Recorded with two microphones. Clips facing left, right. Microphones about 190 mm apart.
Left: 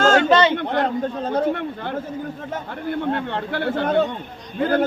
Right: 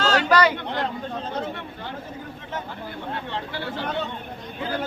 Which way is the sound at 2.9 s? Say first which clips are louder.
Left 9 dB; 55° left (ahead or behind).